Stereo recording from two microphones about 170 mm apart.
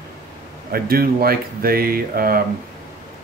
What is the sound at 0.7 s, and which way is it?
Speech, 60° right (ahead or behind).